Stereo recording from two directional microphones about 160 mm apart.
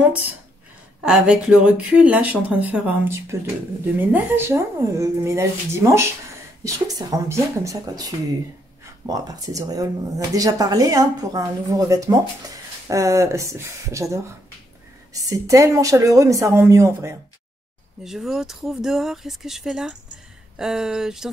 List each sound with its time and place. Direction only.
1.0 s speech: 5° right (ahead or behind)
15.2 s speech: 20° right (ahead or behind)
18.0 s speech: centre (ahead or behind)